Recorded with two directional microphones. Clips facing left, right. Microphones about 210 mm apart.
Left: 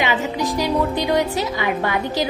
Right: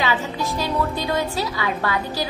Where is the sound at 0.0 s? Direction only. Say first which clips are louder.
Left 3 dB; 15° left (ahead or behind).